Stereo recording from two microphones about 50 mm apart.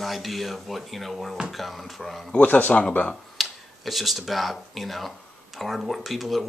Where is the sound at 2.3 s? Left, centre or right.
Left.